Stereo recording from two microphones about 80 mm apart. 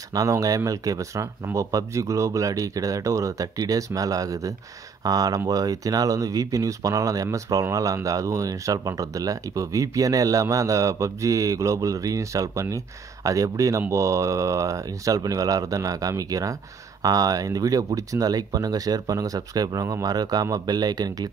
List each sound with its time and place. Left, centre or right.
0.1 s speech: right